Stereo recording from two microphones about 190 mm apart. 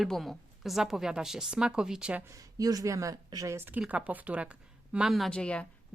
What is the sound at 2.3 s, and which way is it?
A woman's voice, 20° right (ahead or behind).